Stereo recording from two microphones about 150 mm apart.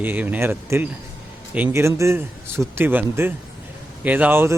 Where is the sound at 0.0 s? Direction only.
10° right (ahead or behind).